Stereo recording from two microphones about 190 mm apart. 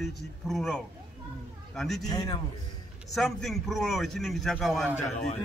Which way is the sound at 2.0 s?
20° left (ahead or behind).